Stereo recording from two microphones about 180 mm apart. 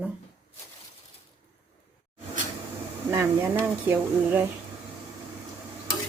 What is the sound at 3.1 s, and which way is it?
Cutlery, 15° right (ahead or behind).